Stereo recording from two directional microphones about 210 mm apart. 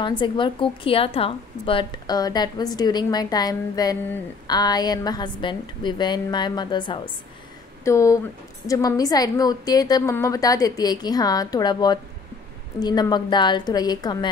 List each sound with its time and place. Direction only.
0.2 s a woman's voice: 25° left (ahead or behind)